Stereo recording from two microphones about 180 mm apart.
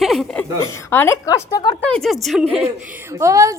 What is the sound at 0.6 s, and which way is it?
A woman's voice, 15° left (ahead or behind).